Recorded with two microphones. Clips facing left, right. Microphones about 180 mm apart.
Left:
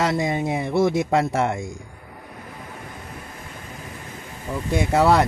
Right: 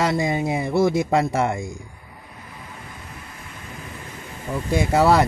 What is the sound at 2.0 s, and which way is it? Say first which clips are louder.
Vehicle: left 4 dB; 55° left (ahead or behind).